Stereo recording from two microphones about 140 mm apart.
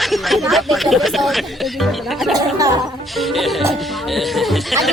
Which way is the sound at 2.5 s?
25° right (ahead or behind).